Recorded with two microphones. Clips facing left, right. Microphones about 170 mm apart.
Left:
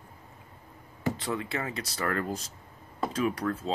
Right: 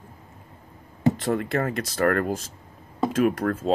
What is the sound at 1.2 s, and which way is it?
Speech, 50° right (ahead or behind).